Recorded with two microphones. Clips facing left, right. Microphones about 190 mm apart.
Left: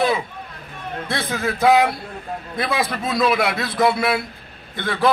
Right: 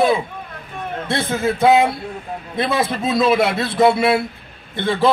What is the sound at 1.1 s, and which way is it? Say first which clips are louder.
Speech: right 4 dB; 25° right (ahead or behind).